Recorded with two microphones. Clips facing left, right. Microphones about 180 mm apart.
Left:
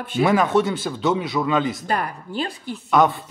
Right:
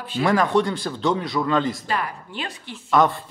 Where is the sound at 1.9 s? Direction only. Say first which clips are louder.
Left 2 dB; 45° left (ahead or behind).